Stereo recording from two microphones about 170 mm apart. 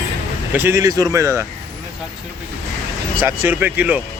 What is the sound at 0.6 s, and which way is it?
Speech, 15° right (ahead or behind).